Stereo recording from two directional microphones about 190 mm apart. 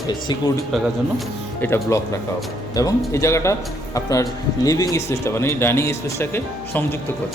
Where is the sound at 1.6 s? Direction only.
15° left (ahead or behind).